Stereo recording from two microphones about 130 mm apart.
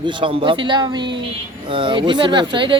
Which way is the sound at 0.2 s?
40° right (ahead or behind).